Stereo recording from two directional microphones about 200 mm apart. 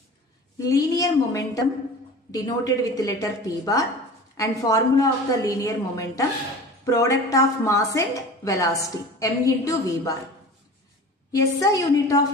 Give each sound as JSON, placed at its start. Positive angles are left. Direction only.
{"t": 0.6, "sound": "speech", "side_deg": 15}
{"t": 11.6, "sound": "speech", "side_deg": 15}